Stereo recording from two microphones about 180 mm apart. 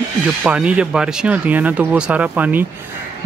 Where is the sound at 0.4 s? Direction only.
5° right (ahead or behind).